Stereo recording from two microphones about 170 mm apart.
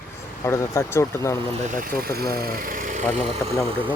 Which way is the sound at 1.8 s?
60° right (ahead or behind).